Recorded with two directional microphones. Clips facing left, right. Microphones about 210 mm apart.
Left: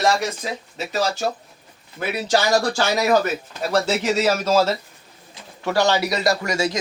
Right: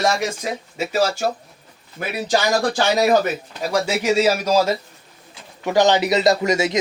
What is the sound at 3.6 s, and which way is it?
A man's voice, 10° right (ahead or behind).